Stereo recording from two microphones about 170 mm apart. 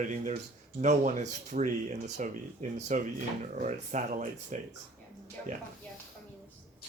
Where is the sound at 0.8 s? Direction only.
45° right (ahead or behind).